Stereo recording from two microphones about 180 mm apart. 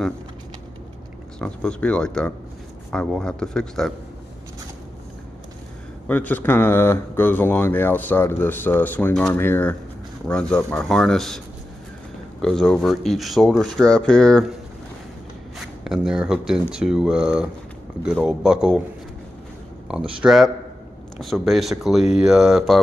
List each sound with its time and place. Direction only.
1.4 s speech: 5° left (ahead or behind)
6.0 s speech: 10° left (ahead or behind)
15.6 s speech: centre (ahead or behind)
19.9 s speech: 5° right (ahead or behind)